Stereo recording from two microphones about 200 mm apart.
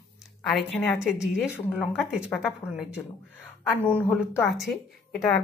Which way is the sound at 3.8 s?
10° left (ahead or behind).